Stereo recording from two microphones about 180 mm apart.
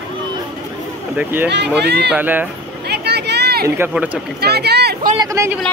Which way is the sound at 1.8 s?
65° right (ahead or behind).